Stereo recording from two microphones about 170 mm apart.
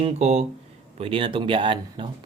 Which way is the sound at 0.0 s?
40° right (ahead or behind).